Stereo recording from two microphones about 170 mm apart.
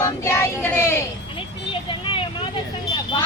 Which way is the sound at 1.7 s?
30° left (ahead or behind).